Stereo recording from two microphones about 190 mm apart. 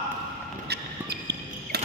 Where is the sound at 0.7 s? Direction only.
60° right (ahead or behind).